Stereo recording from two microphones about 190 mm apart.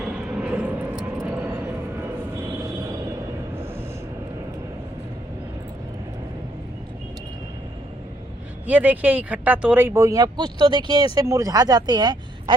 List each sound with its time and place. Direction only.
0.0 s vehicle: 5° right (ahead or behind)
8.6 s speech: 10° right (ahead or behind)